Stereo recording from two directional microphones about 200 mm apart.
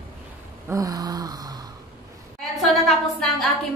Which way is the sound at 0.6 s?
15° right (ahead or behind).